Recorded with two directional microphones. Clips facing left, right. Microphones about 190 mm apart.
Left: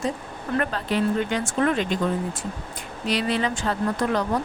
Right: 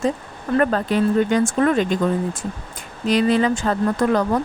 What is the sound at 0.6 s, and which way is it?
Speech, 45° right (ahead or behind).